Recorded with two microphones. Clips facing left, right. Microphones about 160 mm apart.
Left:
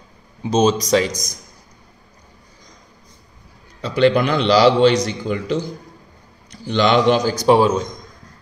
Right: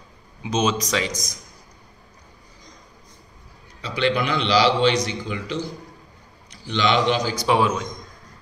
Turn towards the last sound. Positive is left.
turn(degrees=35)  # may be behind; listen again after turning